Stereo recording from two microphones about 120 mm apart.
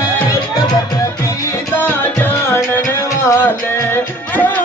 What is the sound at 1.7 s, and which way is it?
Music, 15° left (ahead or behind).